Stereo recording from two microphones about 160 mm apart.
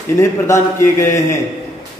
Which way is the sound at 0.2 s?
15° left (ahead or behind).